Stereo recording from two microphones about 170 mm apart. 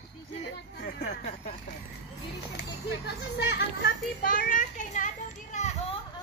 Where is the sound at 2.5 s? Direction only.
85° left.